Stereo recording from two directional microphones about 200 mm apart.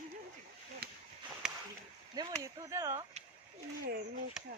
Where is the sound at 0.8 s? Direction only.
50° right (ahead or behind).